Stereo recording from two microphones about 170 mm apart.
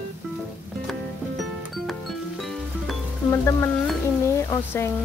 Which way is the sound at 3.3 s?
15° left (ahead or behind).